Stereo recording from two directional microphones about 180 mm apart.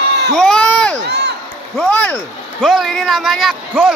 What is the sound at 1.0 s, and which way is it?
Crowd, 75° right (ahead or behind).